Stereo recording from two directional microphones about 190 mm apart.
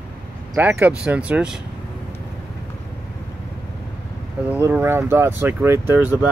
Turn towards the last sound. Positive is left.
turn(degrees=-10)  # may be behind; listen again after turning